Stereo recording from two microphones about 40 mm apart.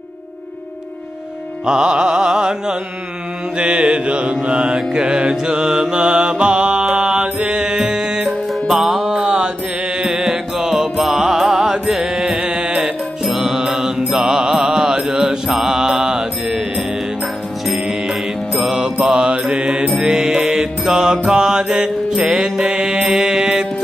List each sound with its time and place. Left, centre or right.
1.7 s carnatic music: centre
3.5 s mantra: right
8.6 s music: centre
11.2 s music: centre
13.2 s mantra: centre
19.0 s mantra: centre
20.8 s music: centre
22.9 s mantra: right